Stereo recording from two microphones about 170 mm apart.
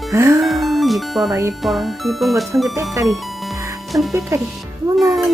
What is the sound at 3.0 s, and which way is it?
Music, centre (ahead or behind).